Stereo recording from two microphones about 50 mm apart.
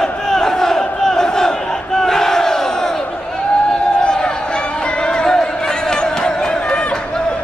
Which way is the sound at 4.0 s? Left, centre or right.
Centre.